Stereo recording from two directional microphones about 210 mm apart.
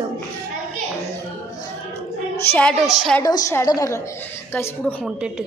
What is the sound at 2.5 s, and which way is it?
Speech, 5° left (ahead or behind).